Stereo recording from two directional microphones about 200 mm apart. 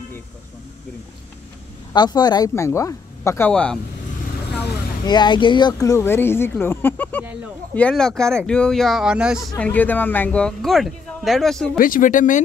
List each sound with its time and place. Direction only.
2.0 s speech: 20° left (ahead or behind); by 3.8 s 5° left (ahead or behind)
5.0 s speech: 20° left (ahead or behind); by 9.5 s 5° right (ahead or behind)
9.6 s speech: 10° left (ahead or behind)
11.8 s speech: 45° left (ahead or behind)